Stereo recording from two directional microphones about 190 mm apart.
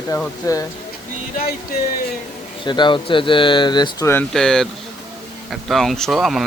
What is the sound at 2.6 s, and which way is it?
Speech, 25° left (ahead or behind).